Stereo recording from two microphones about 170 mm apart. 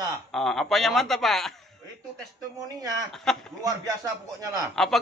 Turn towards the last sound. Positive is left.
turn(degrees=0)  # may be behind; listen again after turning